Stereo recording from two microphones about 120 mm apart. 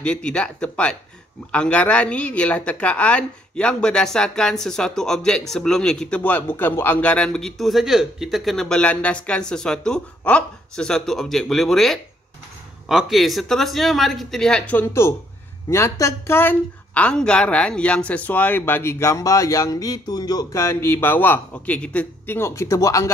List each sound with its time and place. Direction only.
0.0 s a woman's voice: 10° left (ahead or behind); by 23.1 s 25° left (ahead or behind)